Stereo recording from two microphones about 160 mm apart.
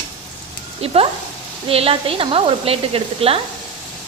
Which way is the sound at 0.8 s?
40° right (ahead or behind).